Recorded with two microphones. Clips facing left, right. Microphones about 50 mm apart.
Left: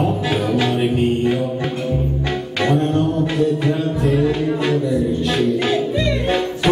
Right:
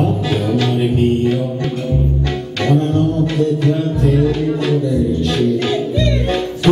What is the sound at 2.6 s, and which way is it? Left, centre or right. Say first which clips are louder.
Music: right 2 dB; centre.